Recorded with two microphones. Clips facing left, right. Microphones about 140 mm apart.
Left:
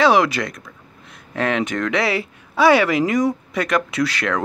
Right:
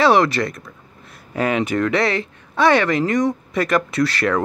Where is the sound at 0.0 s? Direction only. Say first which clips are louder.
Right 1 dB; centre (ahead or behind).